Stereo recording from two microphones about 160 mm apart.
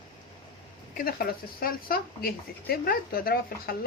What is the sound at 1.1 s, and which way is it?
Speech, 65° left (ahead or behind).